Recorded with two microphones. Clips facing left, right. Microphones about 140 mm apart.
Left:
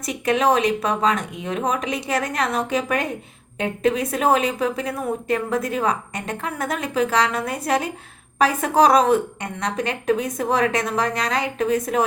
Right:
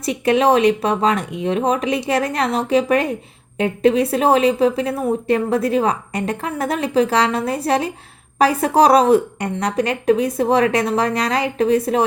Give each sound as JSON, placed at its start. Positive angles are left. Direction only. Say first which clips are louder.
{"t": 0.0, "sound": "a woman's voice", "louder": "right 4 dB", "side_deg": -30}